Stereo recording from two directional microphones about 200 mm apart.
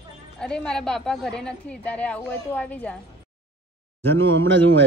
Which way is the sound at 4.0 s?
10° left (ahead or behind).